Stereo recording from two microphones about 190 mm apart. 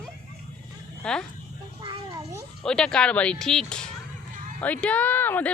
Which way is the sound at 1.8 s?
25° right (ahead or behind).